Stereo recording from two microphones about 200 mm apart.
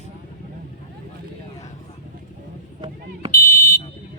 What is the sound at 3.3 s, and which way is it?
Fire alarm, 45° left (ahead or behind).